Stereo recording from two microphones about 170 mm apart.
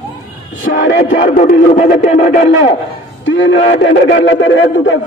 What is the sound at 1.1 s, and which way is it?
Speech, 50° left (ahead or behind).